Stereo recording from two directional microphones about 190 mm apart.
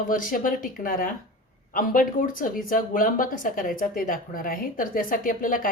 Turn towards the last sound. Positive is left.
turn(degrees=45)  # may be behind; listen again after turning